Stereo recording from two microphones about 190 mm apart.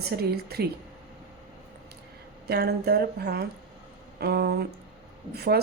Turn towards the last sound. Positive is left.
turn(degrees=-55)  # may be behind; listen again after turning